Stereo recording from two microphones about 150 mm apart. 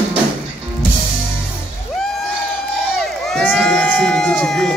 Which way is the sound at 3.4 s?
5° left (ahead or behind).